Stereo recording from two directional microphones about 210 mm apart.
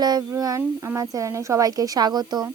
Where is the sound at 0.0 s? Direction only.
20° right (ahead or behind).